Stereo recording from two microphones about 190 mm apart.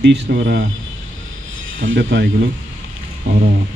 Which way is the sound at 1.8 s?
70° right (ahead or behind).